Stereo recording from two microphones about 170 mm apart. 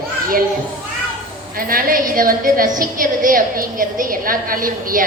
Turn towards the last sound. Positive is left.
turn(degrees=-55)  # may be behind; listen again after turning